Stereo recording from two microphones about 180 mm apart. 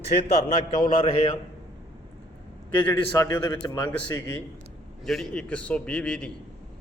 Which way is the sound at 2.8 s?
15° left (ahead or behind).